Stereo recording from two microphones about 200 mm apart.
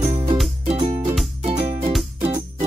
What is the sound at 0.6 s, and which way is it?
Music, 30° right (ahead or behind).